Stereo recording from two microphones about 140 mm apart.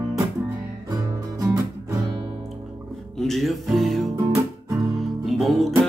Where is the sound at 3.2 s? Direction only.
Centre (ahead or behind).